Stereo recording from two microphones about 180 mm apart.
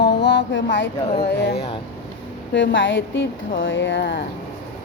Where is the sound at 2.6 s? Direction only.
90° left.